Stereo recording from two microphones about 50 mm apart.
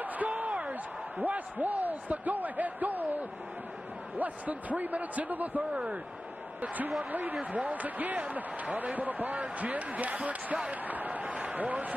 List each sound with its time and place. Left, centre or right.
0.0 s slam: right
1.2 s speech: right
5.7 s speech: right
6.6 s speech: right
10.9 s a sound: right
11.5 s a man's voice: right